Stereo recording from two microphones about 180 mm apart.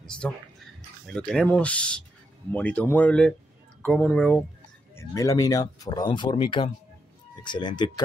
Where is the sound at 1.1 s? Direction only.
5° left (ahead or behind).